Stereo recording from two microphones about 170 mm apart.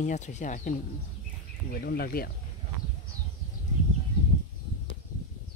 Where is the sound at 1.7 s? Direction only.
60° left (ahead or behind).